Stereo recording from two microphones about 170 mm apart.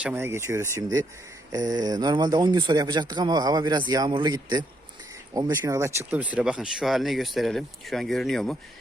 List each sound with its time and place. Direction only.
0.0 s a man's voice: 15° right (ahead or behind); by 8.5 s centre (ahead or behind)